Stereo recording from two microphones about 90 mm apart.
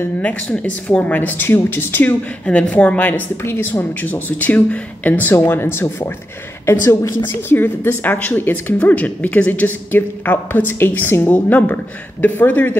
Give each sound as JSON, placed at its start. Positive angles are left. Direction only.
{"t": 0.2, "sound": "a woman's voice", "side_deg": 15}